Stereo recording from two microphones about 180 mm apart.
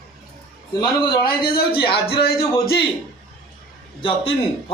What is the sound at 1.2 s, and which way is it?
Speech, 60° left (ahead or behind).